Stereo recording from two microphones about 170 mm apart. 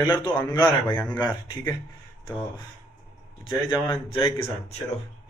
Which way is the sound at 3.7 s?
30° left (ahead or behind).